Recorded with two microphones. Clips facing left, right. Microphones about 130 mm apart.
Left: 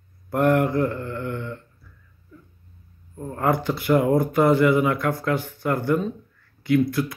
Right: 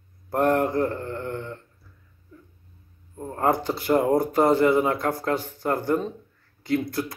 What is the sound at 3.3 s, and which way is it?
Speech, 35° right (ahead or behind).